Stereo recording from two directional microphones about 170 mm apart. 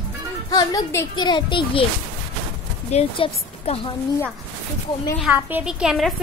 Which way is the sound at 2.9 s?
35° left (ahead or behind).